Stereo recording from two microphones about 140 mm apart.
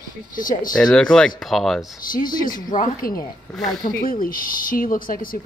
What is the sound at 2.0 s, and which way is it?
Speech, 80° left.